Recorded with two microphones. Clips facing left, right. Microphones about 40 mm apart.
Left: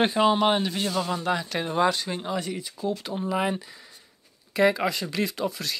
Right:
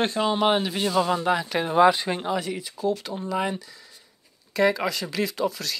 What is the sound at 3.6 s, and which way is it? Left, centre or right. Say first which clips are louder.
Speech: left 1 dB; left.